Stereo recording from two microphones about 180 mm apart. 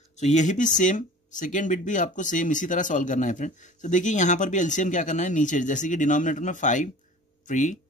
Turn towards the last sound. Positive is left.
turn(degrees=45)  # may be behind; listen again after turning